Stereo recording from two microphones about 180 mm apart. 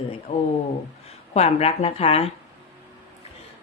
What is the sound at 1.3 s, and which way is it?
A woman's voice, 35° left (ahead or behind).